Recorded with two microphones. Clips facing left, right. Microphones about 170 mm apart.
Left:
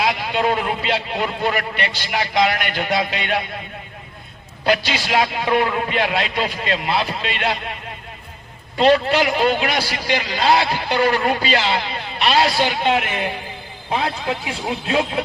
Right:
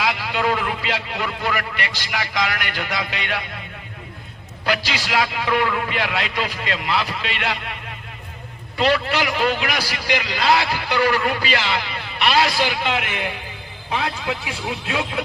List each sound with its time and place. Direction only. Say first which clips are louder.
0.0 s a man's voice: left 2 dB; 25° left (ahead or behind)
4.6 s a man's voice: left 4 dB; 25° left (ahead or behind)
8.8 s a man's voice: left 5 dB; 25° left (ahead or behind)